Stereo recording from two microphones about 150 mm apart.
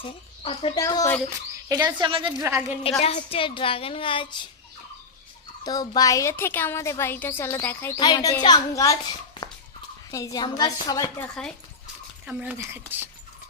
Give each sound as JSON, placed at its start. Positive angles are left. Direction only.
{"t": 0.0, "sound": "speech", "side_deg": 40}
{"t": 0.8, "sound": "a woman's voice", "side_deg": 25}
{"t": 2.0, "sound": "a woman's voice", "side_deg": -35}
{"t": 2.4, "sound": "speech", "side_deg": -15}
{"t": 3.0, "sound": "a woman's voice", "side_deg": 45}
{"t": 5.6, "sound": "speech", "side_deg": 25}
{"t": 7.9, "sound": "a woman's voice", "side_deg": 30}
{"t": 9.4, "sound": "a sound", "side_deg": 30}
{"t": 10.1, "sound": "a woman's voice", "side_deg": 25}
{"t": 11.2, "sound": "speech", "side_deg": 5}
{"t": 12.2, "sound": "speech", "side_deg": -10}